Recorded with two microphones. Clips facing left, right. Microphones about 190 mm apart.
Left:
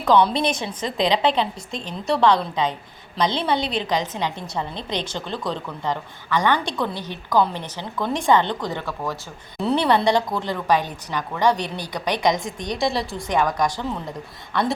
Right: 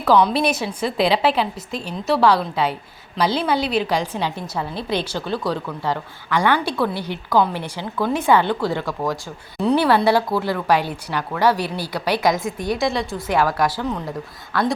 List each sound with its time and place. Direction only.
0.0 s a woman's voice: centre (ahead or behind)
9.6 s a woman's voice: centre (ahead or behind)